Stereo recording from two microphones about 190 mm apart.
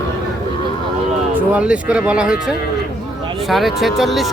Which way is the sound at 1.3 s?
5° right (ahead or behind).